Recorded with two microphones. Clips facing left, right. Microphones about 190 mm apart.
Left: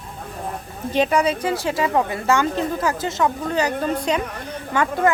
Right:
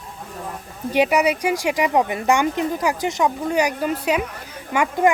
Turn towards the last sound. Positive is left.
turn(degrees=-15)  # may be behind; listen again after turning